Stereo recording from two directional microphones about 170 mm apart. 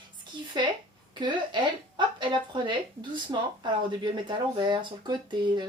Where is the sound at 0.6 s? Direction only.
25° right (ahead or behind).